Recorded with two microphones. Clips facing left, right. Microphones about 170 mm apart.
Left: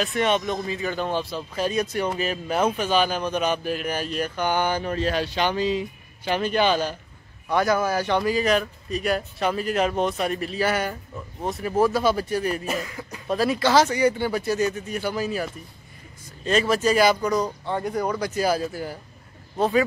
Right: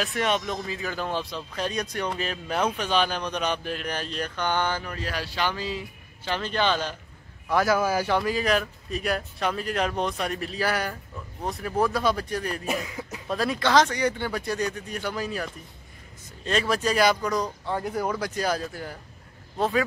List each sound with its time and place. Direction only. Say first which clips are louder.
0.0 s speech: left 3 dB; centre (ahead or behind)
4.8 s speech: left 8 dB; 25° left (ahead or behind)
7.4 s speech: left 1 dB; 5° right (ahead or behind)
12.8 s speech: even; 20° right (ahead or behind)
13.3 s speech: left 3 dB; 5° left (ahead or behind)